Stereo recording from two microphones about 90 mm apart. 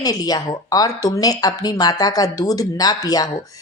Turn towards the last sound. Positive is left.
turn(degrees=45)  # may be behind; listen again after turning